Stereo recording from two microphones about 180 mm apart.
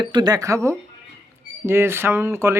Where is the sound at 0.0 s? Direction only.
25° right (ahead or behind).